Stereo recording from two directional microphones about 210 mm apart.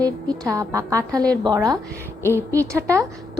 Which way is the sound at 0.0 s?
15° right (ahead or behind).